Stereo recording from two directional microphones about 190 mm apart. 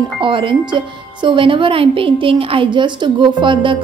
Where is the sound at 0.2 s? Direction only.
25° right (ahead or behind).